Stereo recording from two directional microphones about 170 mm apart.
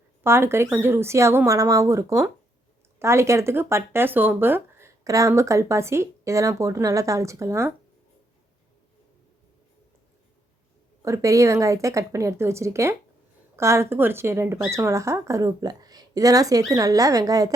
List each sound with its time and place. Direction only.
0.2 s speech: 15° right (ahead or behind)
11.0 s a woman's voice: 20° right (ahead or behind)